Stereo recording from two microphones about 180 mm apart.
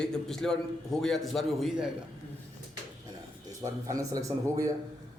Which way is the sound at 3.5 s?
20° right (ahead or behind).